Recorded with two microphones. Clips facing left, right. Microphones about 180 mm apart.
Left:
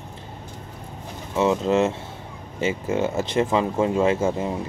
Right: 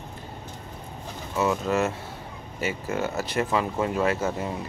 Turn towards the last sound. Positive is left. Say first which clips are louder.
# left 5 dB
turn(degrees=25)  # may be behind; listen again after turning